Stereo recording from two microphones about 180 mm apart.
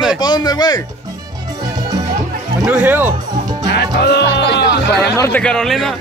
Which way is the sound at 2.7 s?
10° right (ahead or behind).